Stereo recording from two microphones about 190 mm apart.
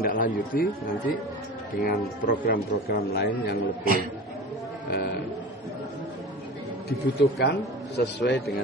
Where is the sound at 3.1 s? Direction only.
55° left (ahead or behind).